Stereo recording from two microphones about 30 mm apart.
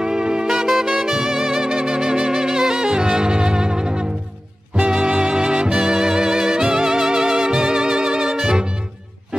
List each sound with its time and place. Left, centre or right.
0.0 s saxophone: right
0.5 s music: centre